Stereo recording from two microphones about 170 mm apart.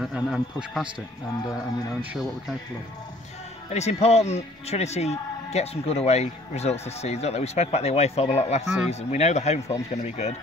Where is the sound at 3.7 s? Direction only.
40° left (ahead or behind).